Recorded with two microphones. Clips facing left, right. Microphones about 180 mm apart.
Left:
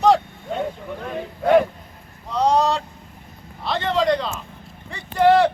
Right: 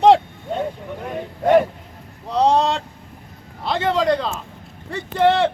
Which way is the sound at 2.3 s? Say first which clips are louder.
Right 2 dB; 30° right (ahead or behind).